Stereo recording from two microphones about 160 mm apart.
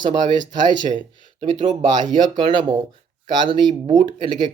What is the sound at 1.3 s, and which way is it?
Speech, 45° right (ahead or behind).